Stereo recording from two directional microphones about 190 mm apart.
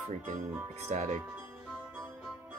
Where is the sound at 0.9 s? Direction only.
35° right (ahead or behind).